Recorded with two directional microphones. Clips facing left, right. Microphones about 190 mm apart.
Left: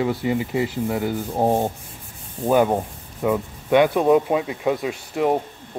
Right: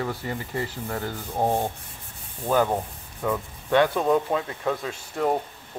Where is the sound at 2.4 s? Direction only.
15° left (ahead or behind).